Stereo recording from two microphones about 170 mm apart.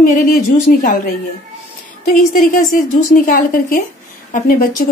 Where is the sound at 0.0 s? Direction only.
50° left (ahead or behind).